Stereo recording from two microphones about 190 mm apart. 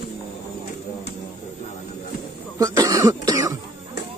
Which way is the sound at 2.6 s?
15° right (ahead or behind).